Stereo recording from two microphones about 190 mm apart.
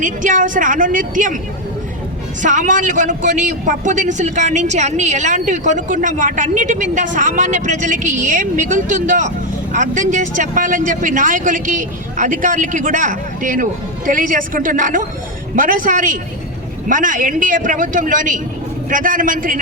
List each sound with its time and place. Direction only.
0.0 s a man's voice: 40° right (ahead or behind)
2.4 s a man's voice: 40° right (ahead or behind)